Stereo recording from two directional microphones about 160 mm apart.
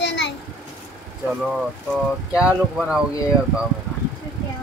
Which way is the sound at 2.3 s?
5° right (ahead or behind).